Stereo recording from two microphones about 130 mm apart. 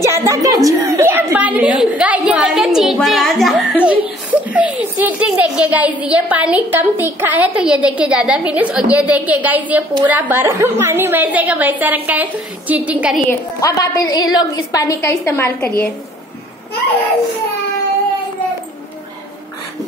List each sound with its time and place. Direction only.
0.0 s a woman's voice: 25° right (ahead or behind)
13.3 s a woman's voice: 25° left (ahead or behind)